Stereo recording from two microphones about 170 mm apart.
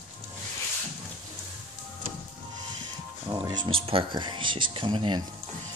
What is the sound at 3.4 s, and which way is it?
Speech, 25° right (ahead or behind).